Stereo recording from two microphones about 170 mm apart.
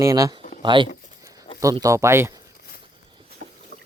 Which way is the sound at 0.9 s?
55° left (ahead or behind).